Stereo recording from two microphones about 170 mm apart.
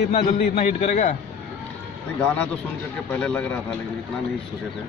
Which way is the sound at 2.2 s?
10° left (ahead or behind).